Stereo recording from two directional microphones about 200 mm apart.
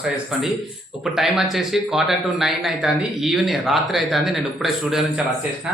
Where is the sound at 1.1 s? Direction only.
Centre (ahead or behind).